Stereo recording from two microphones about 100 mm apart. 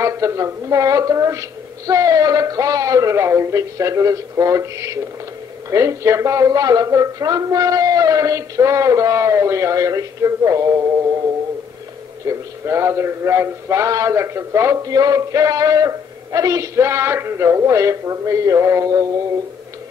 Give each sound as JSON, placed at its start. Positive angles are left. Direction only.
{"t": 0.0, "sound": "speech", "side_deg": -30}
{"t": 12.3, "sound": "speech", "side_deg": -25}